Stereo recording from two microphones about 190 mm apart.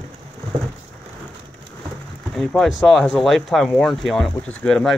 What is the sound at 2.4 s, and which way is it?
Speech, centre (ahead or behind).